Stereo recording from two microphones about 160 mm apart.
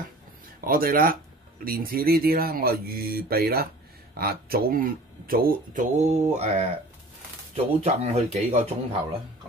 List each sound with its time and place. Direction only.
0.7 s speech: 65° right (ahead or behind); by 8.6 s 45° right (ahead or behind)